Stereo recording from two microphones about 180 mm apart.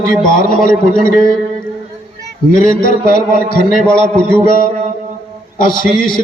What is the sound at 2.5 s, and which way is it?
A man's voice, 50° left (ahead or behind).